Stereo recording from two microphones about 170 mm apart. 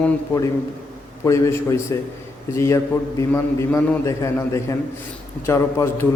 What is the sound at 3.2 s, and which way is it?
Speech, 15° left (ahead or behind).